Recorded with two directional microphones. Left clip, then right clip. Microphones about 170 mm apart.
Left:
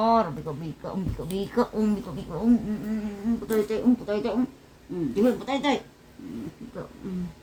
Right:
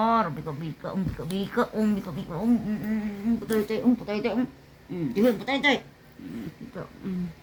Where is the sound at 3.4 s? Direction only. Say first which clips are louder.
Left 2 dB; 20° right (ahead or behind).